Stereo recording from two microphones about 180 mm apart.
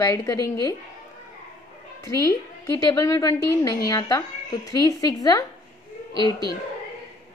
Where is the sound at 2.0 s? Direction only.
20° left (ahead or behind).